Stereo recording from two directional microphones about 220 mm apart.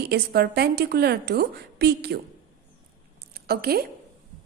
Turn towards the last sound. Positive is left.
turn(degrees=-45)  # may be behind; listen again after turning